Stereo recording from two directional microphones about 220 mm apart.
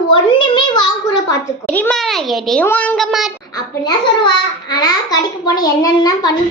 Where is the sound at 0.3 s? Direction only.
20° left (ahead or behind).